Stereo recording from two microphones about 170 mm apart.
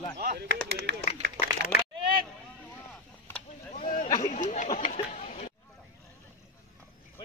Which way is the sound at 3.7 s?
55° left (ahead or behind).